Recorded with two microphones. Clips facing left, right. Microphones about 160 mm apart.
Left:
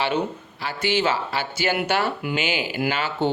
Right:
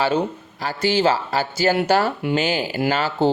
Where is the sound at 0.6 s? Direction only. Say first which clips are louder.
Right 4 dB; 40° right (ahead or behind).